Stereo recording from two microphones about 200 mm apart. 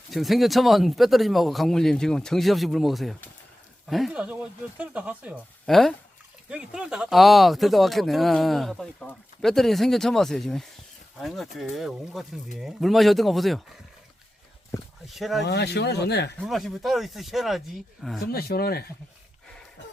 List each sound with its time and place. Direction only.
0.1 s speech: centre (ahead or behind)
15.0 s speech: centre (ahead or behind)
15.4 s speech: 55° left (ahead or behind)
16.4 s speech: centre (ahead or behind)
18.2 s speech: 50° left (ahead or behind)